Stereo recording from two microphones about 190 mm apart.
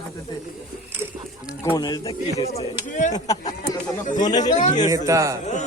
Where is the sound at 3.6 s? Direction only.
40° left (ahead or behind).